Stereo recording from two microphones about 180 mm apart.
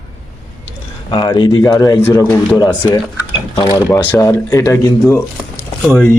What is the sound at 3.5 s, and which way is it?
Speech, 25° left (ahead or behind).